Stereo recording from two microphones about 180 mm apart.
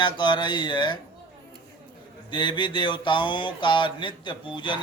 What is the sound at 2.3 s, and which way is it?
Mantra, 25° left (ahead or behind).